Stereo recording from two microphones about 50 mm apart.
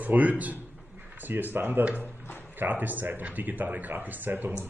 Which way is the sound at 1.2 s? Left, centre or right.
Right.